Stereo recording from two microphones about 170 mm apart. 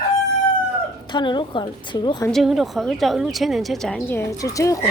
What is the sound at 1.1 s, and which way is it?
A woman's voice, 30° left (ahead or behind).